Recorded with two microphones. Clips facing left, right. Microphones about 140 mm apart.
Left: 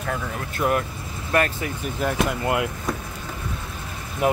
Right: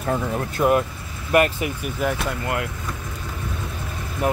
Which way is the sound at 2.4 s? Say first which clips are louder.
Left 2 dB; 20° left (ahead or behind).